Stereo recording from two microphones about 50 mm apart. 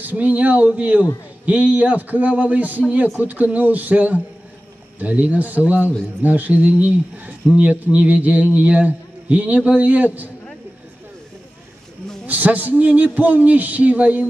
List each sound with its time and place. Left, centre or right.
0.0 s speech: right
12.3 s speech: right